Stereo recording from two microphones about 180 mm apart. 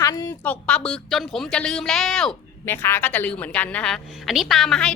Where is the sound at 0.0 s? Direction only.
20° left (ahead or behind).